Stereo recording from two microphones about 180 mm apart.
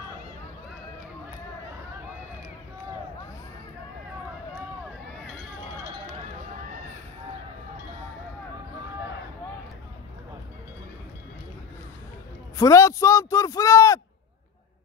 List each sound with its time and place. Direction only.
12.5 s a man's voice: 15° left (ahead or behind)